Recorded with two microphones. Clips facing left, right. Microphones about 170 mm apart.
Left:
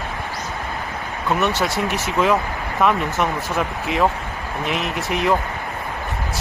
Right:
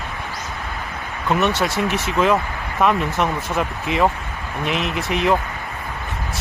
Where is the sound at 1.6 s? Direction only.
Centre (ahead or behind).